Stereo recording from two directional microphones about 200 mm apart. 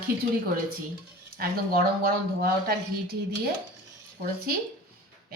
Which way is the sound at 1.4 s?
50° right (ahead or behind).